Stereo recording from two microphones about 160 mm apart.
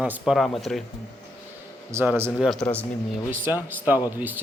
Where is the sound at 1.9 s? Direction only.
15° right (ahead or behind).